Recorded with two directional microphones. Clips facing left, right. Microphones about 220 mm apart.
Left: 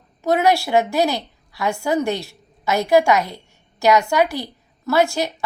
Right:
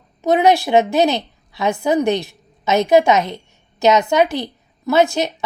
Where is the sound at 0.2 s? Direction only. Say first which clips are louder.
Right 3 dB; 20° right (ahead or behind).